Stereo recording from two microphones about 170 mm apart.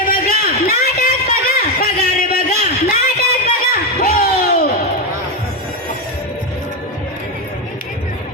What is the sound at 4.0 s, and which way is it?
Crowd, 60° left (ahead or behind).